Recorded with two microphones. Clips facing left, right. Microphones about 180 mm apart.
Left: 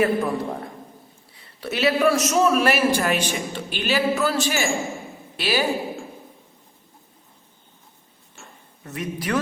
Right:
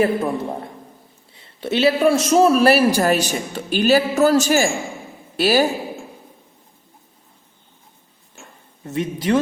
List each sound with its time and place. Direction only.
0.0 s a man's voice: 25° right (ahead or behind); by 5.6 s 40° right (ahead or behind)
8.8 s a man's voice: 25° right (ahead or behind)